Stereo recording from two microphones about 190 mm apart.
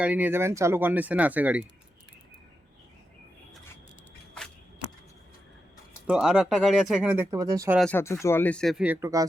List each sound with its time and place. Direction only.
0.0 s speech: 10° right (ahead or behind)
6.1 s speech: 5° right (ahead or behind)
7.3 s speech: 20° right (ahead or behind)
7.8 s speech: 10° left (ahead or behind); by 9.2 s 15° right (ahead or behind)